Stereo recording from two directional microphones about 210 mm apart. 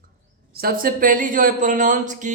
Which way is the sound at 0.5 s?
45° right (ahead or behind).